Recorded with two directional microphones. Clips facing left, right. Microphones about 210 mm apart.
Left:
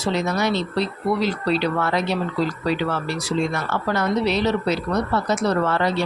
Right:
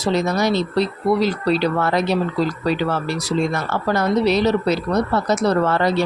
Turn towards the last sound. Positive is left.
turn(degrees=-40)  # may be behind; listen again after turning